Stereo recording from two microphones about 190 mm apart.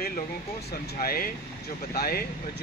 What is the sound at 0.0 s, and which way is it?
Speech, 55° left (ahead or behind).